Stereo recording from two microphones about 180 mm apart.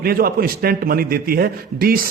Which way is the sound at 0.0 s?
55° right (ahead or behind).